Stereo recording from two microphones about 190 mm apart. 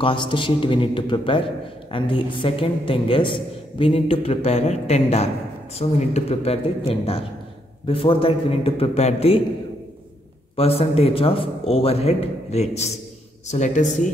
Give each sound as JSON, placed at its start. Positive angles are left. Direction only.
{"t": 0.0, "sound": "a woman's voice", "side_deg": 25}
{"t": 10.5, "sound": "a man's voice", "side_deg": 30}